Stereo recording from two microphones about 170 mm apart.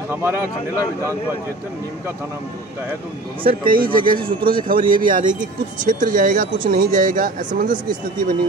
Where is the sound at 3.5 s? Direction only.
60° right (ahead or behind).